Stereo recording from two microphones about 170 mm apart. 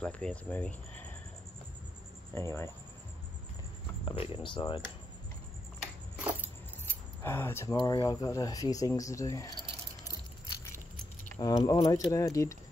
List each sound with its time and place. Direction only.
0.0 s speech: 5° left (ahead or behind)
2.3 s speech: 15° left (ahead or behind)
4.0 s speech: 35° left (ahead or behind)
6.1 s a sound: 10° right (ahead or behind)
7.2 s speech: 15° left (ahead or behind)
11.3 s speech: 20° left (ahead or behind)